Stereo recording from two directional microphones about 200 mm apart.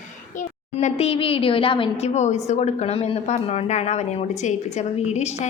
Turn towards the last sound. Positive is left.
turn(degrees=35)  # may be behind; listen again after turning